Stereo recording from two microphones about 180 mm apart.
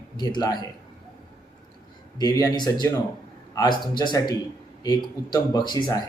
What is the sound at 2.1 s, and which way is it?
A man's voice, 20° left (ahead or behind).